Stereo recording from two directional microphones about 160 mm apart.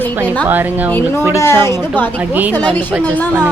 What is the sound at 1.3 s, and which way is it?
A woman's voice, 15° left (ahead or behind).